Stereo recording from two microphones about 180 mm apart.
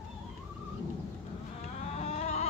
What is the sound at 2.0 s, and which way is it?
Vehicle, 35° left (ahead or behind).